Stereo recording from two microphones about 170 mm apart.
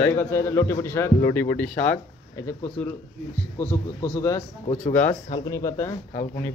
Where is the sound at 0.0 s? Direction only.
15° left (ahead or behind).